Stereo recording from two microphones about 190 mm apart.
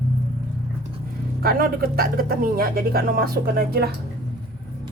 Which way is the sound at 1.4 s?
55° right (ahead or behind).